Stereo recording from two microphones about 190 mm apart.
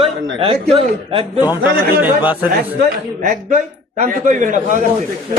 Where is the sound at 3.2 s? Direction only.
40° right (ahead or behind).